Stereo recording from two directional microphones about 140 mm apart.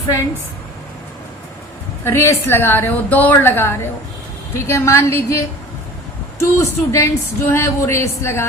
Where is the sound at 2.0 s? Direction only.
20° left (ahead or behind).